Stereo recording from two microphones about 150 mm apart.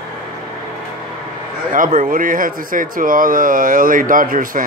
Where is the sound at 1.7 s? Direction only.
60° right (ahead or behind).